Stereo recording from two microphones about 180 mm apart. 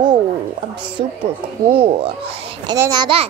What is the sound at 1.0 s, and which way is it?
A child's voice, 25° right (ahead or behind).